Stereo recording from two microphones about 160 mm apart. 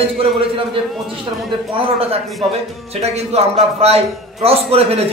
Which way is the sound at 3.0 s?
40° right (ahead or behind).